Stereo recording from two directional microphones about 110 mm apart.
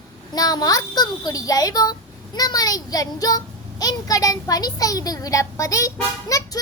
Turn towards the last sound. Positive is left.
turn(degrees=30)  # may be behind; listen again after turning